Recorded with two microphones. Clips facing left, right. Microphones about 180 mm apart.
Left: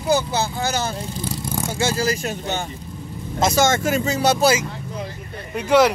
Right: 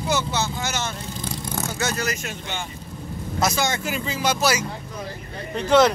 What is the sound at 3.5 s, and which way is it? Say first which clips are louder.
Speech: left 7 dB; 45° left (ahead or behind).